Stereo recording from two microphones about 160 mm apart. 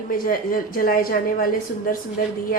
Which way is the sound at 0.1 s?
60° left (ahead or behind).